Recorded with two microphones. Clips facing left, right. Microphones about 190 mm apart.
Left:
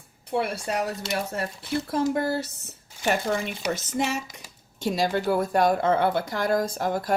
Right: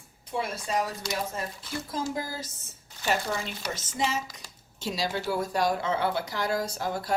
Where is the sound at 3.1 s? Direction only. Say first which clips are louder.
Left 4 dB; 55° left (ahead or behind).